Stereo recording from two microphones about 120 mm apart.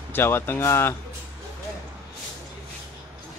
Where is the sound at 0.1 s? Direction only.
20° left (ahead or behind).